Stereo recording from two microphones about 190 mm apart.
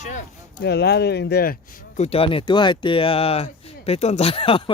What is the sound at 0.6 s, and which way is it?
Speech, 60° left (ahead or behind).